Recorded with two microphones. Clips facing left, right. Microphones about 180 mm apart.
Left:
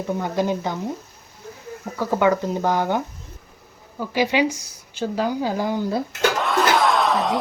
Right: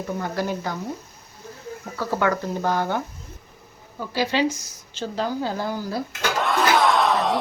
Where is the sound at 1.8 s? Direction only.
15° left (ahead or behind).